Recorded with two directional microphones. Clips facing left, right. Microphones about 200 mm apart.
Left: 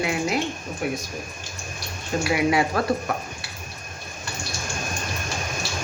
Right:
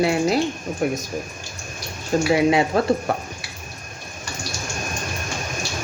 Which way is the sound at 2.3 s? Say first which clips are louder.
Right 3 dB; 25° right (ahead or behind).